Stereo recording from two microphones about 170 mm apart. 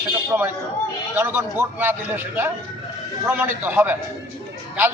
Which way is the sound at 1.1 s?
15° right (ahead or behind).